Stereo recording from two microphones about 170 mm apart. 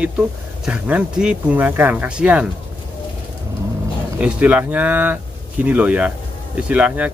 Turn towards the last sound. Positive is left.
turn(degrees=-10)  # may be behind; listen again after turning